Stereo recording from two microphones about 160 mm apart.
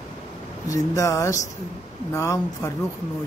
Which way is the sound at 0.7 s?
20° left (ahead or behind).